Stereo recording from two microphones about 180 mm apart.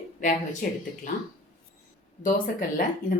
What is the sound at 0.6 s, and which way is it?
Speech, 50° left (ahead or behind).